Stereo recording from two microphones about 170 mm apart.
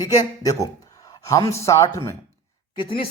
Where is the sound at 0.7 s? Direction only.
20° left (ahead or behind).